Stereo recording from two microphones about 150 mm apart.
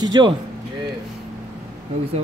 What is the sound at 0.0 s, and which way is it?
Speech, 30° right (ahead or behind).